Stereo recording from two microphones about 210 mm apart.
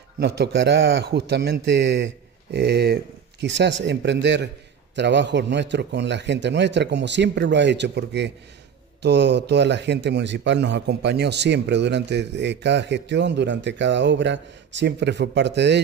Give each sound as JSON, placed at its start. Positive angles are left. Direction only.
{"t": 0.2, "sound": "a man's voice", "side_deg": -55}